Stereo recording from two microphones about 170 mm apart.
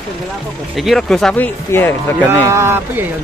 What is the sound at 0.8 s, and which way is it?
Speech, centre (ahead or behind).